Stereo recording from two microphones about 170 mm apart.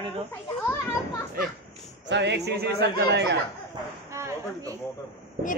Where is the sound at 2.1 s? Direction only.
90° right.